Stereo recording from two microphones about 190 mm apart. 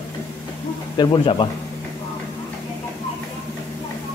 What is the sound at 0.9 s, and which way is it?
Speech, 25° left (ahead or behind).